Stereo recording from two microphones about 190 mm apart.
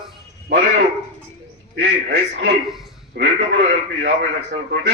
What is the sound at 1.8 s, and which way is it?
A man's voice, 65° right (ahead or behind).